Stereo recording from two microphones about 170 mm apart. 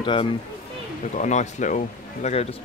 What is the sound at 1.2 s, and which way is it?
Speech, 45° left (ahead or behind).